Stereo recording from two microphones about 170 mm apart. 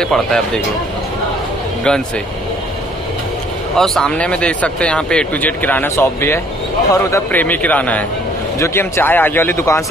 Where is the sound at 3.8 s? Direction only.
5° left (ahead or behind).